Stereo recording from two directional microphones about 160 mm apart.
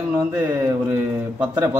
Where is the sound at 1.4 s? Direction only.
15° right (ahead or behind).